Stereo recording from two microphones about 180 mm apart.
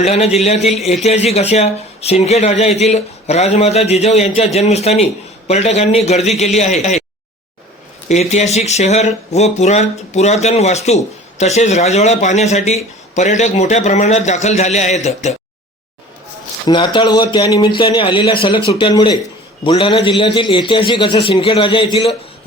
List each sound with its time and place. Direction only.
0.0 s speech: 35° left (ahead or behind)
8.0 s speech: 40° left (ahead or behind)
16.6 s a man's voice: 25° left (ahead or behind)